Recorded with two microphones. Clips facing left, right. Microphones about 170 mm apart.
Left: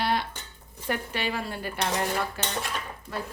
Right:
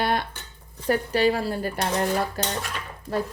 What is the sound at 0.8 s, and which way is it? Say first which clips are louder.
Dishes: right 9 dB; 40° right (ahead or behind).